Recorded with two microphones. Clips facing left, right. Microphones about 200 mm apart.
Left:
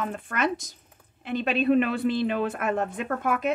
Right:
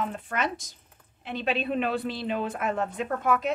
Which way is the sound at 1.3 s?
45° left (ahead or behind).